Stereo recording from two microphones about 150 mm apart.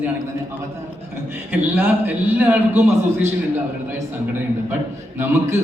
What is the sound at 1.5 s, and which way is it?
A man's voice, 10° right (ahead or behind).